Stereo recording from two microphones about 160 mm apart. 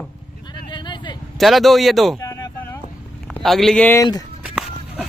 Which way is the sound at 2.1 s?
20° left (ahead or behind).